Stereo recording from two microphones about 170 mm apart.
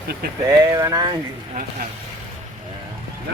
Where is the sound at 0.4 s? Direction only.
20° right (ahead or behind).